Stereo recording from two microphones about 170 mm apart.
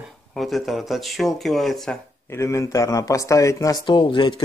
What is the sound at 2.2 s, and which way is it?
A man's voice, 15° left (ahead or behind).